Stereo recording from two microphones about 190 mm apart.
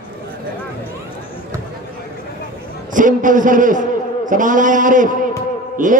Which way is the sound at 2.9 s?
45° right (ahead or behind).